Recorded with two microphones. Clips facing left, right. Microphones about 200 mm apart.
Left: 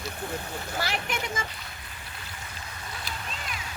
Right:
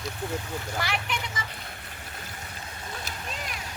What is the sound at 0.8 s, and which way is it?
Speech, 40° left (ahead or behind).